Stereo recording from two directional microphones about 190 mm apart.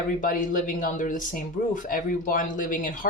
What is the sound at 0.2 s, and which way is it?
Speech, 45° left (ahead or behind).